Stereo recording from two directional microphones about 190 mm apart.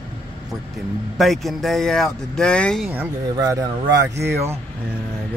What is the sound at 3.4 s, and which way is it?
Speech, 15° right (ahead or behind).